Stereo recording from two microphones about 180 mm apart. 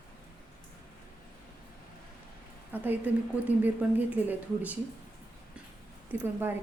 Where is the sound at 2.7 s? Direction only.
10° right (ahead or behind).